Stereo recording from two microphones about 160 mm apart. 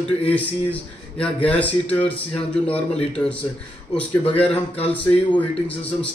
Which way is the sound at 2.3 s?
35° left (ahead or behind).